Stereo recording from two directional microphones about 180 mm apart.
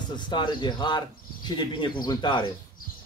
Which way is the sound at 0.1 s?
25° left (ahead or behind).